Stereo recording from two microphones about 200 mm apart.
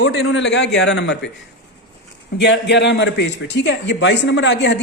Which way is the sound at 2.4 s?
60° left (ahead or behind).